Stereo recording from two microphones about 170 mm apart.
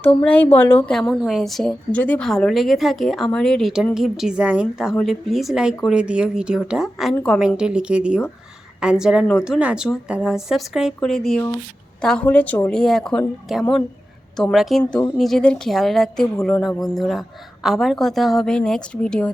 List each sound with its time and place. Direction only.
0.2 s a woman's voice: 10° left (ahead or behind)